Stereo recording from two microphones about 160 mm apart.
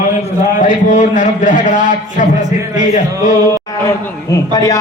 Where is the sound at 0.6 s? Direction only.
55° left (ahead or behind).